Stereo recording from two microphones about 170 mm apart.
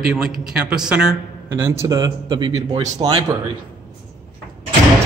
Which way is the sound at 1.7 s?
20° right (ahead or behind).